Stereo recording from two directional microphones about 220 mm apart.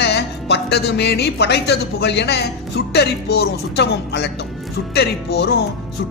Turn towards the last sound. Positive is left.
turn(degrees=50)  # may be behind; listen again after turning